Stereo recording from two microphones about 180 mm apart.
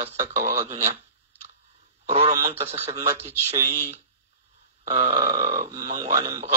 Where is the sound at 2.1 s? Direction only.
35° right (ahead or behind).